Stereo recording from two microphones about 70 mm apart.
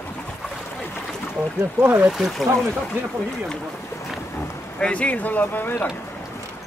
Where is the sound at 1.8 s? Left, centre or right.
Right.